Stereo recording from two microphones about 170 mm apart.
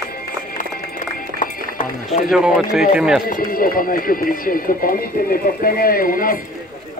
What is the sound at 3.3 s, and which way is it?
A man's voice, 60° left (ahead or behind).